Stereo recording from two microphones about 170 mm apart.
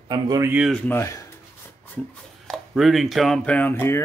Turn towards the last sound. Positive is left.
turn(degrees=15)  # may be behind; listen again after turning